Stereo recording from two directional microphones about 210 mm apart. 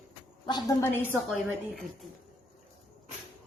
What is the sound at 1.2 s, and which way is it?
Speech, centre (ahead or behind).